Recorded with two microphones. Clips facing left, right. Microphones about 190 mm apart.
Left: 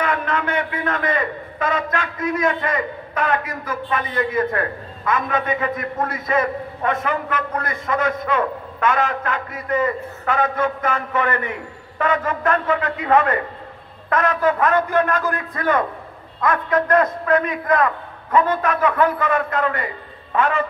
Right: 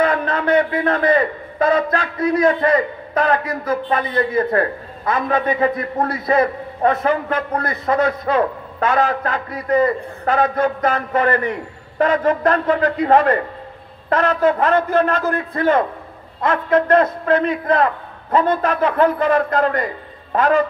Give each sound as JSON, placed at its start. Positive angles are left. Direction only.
{"t": 0.0, "sound": "a man's voice", "side_deg": -35}